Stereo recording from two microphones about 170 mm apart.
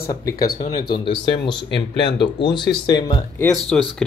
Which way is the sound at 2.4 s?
25° left (ahead or behind).